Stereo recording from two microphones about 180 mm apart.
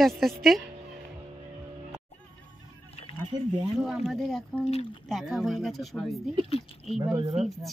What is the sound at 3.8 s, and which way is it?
Speech, centre (ahead or behind).